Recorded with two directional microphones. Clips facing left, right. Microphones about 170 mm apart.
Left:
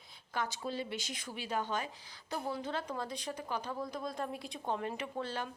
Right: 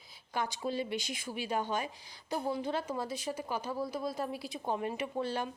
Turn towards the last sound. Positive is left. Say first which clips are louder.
# right 4 dB
turn(degrees=-10)  # may be behind; listen again after turning